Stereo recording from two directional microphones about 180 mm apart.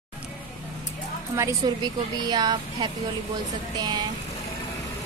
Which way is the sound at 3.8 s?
25° right (ahead or behind).